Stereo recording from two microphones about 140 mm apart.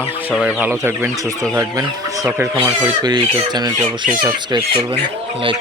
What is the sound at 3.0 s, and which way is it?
Speech, 30° right (ahead or behind).